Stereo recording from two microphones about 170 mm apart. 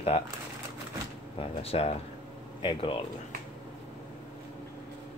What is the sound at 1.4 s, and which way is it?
Speech, 35° left (ahead or behind).